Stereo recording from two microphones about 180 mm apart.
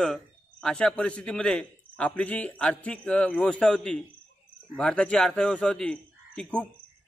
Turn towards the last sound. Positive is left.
turn(degrees=5)  # may be behind; listen again after turning